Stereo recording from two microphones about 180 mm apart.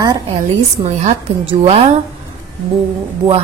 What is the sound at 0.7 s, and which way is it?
Speech, 35° right (ahead or behind).